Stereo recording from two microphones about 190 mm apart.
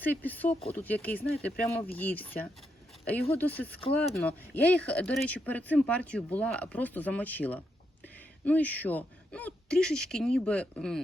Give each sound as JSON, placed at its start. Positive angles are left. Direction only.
{"t": 0.0, "sound": "speech", "side_deg": 10}